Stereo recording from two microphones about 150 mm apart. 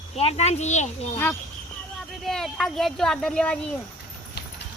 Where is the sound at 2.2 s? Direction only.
5° left (ahead or behind).